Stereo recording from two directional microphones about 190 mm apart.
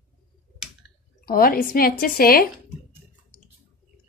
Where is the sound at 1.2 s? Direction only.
50° left (ahead or behind).